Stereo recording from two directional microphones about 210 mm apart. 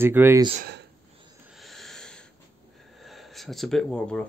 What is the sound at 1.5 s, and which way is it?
Owl, centre (ahead or behind).